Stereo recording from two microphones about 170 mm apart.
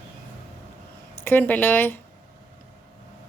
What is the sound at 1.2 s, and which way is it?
Speech, 10° left (ahead or behind).